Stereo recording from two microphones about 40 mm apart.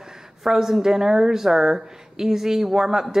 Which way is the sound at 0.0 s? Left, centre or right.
Centre.